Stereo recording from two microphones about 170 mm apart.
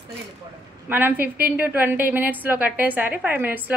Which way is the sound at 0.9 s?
10° right (ahead or behind).